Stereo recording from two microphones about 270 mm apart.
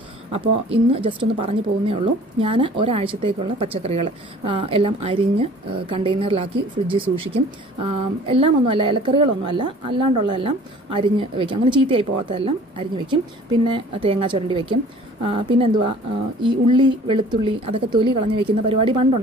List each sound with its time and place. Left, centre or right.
0.3 s speech: right